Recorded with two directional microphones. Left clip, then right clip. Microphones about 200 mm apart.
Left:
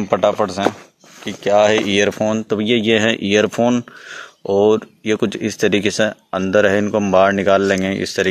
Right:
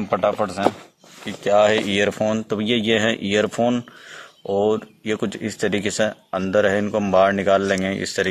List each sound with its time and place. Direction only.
0.1 s speech: 40° left (ahead or behind)